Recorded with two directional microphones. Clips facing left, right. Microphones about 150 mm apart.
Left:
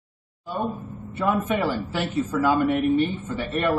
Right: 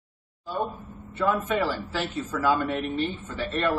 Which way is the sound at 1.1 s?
15° left (ahead or behind).